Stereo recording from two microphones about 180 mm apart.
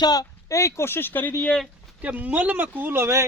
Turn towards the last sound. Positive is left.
turn(degrees=-15)  # may be behind; listen again after turning